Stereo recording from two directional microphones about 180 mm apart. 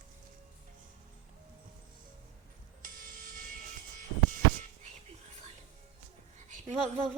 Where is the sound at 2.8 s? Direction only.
50° right (ahead or behind).